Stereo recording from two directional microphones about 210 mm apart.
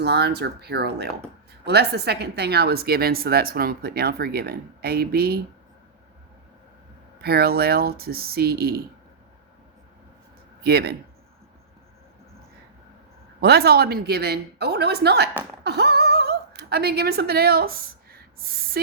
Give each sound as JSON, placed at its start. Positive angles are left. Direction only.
{"t": 0.0, "sound": "a woman's voice", "side_deg": -50}
{"t": 7.2, "sound": "a woman's voice", "side_deg": -50}
{"t": 10.6, "sound": "speech", "side_deg": -50}
{"t": 13.4, "sound": "a woman's voice", "side_deg": -50}